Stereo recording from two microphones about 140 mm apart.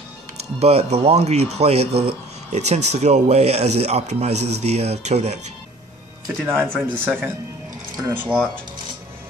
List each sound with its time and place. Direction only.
0.6 s speech: 50° right (ahead or behind)
6.5 s speech: 5° left (ahead or behind)
8.1 s speech: 15° right (ahead or behind)